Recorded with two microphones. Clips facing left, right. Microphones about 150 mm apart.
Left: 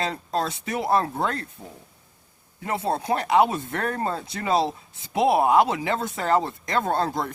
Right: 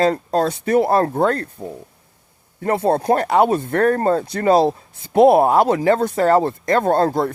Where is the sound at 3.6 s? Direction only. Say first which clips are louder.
Right 10 dB; 55° right (ahead or behind).